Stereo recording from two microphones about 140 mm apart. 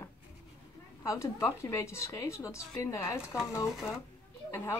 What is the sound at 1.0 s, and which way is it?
A woman's voice, 20° left (ahead or behind).